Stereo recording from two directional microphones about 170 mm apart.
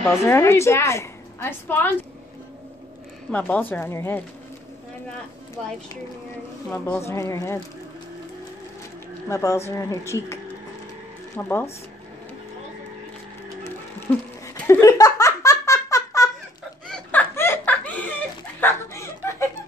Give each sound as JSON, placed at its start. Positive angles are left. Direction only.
{"t": 0.0, "sound": "a woman's voice", "side_deg": 15}
{"t": 3.3, "sound": "a woman's voice", "side_deg": 10}
{"t": 7.1, "sound": "a woman's voice", "side_deg": 20}
{"t": 9.3, "sound": "a woman's voice", "side_deg": 20}
{"t": 13.9, "sound": "laughter", "side_deg": 15}
{"t": 16.8, "sound": "a sound", "side_deg": 5}